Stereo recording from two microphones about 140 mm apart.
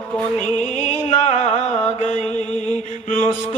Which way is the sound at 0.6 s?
55° left (ahead or behind).